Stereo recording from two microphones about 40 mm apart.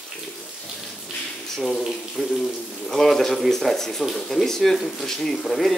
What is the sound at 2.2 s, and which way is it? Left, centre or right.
Speech, centre.